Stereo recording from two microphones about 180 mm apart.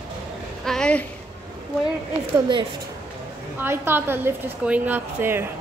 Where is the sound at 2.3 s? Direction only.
25° right (ahead or behind).